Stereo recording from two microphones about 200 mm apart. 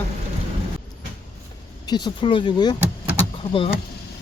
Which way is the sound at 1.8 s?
20° left (ahead or behind).